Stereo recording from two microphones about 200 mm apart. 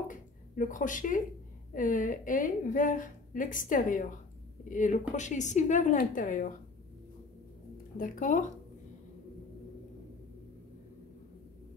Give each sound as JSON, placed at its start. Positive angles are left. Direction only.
{"t": 0.1, "sound": "a woman's voice", "side_deg": 40}
{"t": 8.0, "sound": "a woman's voice", "side_deg": 40}